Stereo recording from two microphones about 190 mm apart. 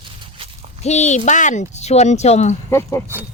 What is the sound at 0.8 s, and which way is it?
Speech, 35° left (ahead or behind).